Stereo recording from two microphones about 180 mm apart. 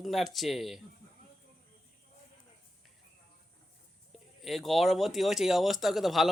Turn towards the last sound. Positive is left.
turn(degrees=0)  # may be behind; listen again after turning